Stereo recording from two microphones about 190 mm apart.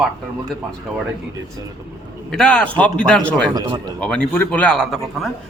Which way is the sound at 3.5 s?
20° right (ahead or behind).